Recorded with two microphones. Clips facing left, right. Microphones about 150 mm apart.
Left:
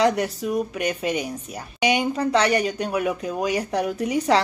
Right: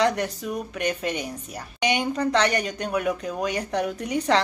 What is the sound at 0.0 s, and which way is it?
Speech, 5° left (ahead or behind).